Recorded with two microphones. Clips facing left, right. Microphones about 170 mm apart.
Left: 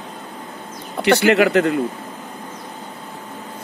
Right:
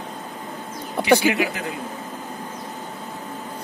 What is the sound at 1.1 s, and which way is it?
Speech, 70° left (ahead or behind).